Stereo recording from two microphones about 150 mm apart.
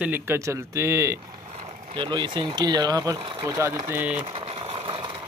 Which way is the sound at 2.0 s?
30° right (ahead or behind).